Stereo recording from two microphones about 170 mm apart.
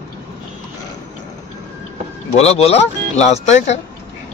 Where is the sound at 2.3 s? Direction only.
40° left (ahead or behind).